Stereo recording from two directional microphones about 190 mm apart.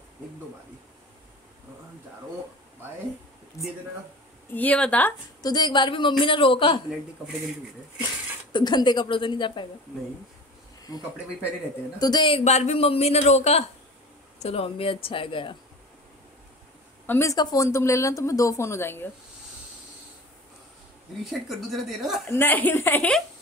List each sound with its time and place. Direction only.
3.6 s speech: 15° left (ahead or behind)
5.4 s a woman's voice: 20° left (ahead or behind)
8.5 s a woman's voice: 25° left (ahead or behind)
12.0 s a man's voice: 25° left (ahead or behind)
17.0 s speech: 10° left (ahead or behind)
21.2 s speech: centre (ahead or behind)
22.3 s speech: 10° left (ahead or behind)